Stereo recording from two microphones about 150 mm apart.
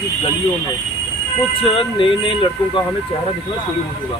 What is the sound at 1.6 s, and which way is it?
Speech, 35° left (ahead or behind).